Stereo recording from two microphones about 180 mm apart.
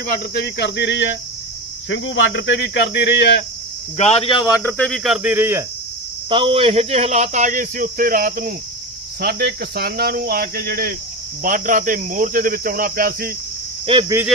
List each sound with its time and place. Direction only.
0.1 s speech: 65° left (ahead or behind)
1.9 s speech: 90° left; by 3.4 s 65° left (ahead or behind)
3.9 s speech: 35° left (ahead or behind); by 4.7 s 20° left (ahead or behind)
4.8 s speech: centre (ahead or behind)
6.3 s speech: 30° right (ahead or behind); by 13.3 s 55° right (ahead or behind)
13.9 s speech: 30° right (ahead or behind)